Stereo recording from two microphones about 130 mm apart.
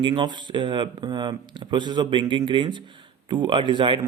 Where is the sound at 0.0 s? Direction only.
35° right (ahead or behind).